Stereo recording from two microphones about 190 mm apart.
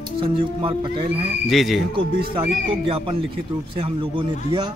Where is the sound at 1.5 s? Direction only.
Centre (ahead or behind).